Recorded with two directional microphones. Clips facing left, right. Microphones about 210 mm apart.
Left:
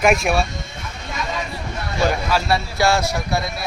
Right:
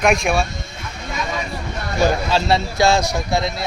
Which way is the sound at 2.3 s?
20° right (ahead or behind).